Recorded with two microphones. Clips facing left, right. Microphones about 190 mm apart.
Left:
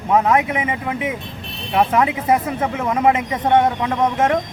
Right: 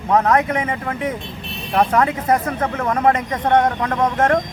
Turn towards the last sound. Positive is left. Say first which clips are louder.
# even
turn(degrees=5)  # may be behind; listen again after turning